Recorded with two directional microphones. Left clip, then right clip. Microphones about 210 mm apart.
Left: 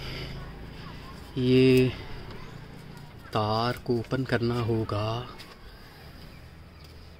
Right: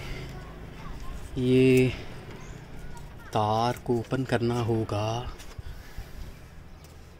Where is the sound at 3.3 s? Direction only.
5° right (ahead or behind).